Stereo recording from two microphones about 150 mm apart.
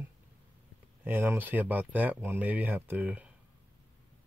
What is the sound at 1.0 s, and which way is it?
Speech, 15° right (ahead or behind).